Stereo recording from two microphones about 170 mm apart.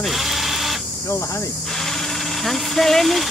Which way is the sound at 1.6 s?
Centre (ahead or behind).